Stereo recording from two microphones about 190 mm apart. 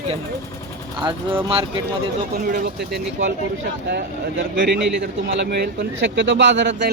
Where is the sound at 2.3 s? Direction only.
50° right (ahead or behind).